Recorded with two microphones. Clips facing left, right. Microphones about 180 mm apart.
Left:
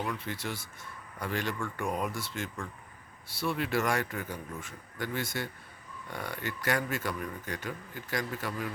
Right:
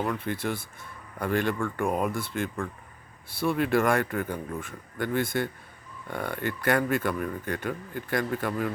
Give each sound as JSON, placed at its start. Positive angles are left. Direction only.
{"t": 0.0, "sound": "a man's voice", "side_deg": -55}